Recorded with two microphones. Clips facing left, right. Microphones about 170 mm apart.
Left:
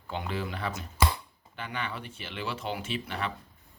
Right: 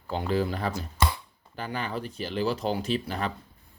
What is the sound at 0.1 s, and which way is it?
A man's voice, 35° right (ahead or behind).